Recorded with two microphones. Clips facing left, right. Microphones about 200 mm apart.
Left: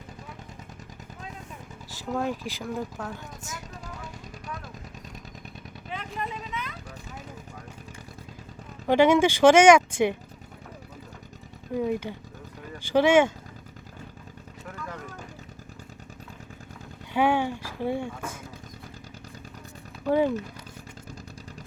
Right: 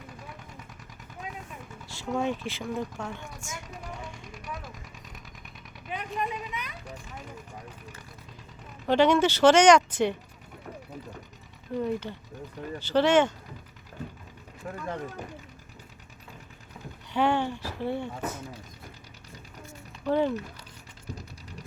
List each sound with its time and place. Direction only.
2.0 s speech: centre (ahead or behind)
5.9 s a sound: 15° right (ahead or behind)
8.9 s speech: 10° left (ahead or behind)
11.7 s speech: 10° left (ahead or behind)
14.7 s vehicle: 30° right (ahead or behind)
17.2 s speech: 10° left (ahead or behind)
20.1 s speech: 10° left (ahead or behind)